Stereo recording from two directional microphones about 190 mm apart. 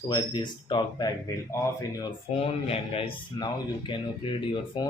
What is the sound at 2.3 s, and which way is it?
Speech, 30° left (ahead or behind).